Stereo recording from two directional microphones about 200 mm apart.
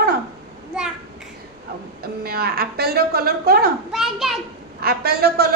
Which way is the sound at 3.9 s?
Centre (ahead or behind).